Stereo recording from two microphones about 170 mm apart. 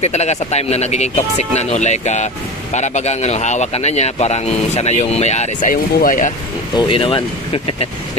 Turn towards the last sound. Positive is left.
turn(degrees=35)  # may be behind; listen again after turning